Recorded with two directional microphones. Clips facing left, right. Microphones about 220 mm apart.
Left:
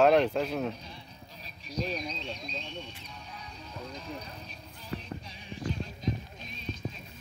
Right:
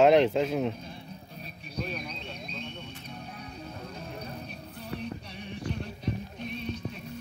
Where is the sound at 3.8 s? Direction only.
60° right (ahead or behind).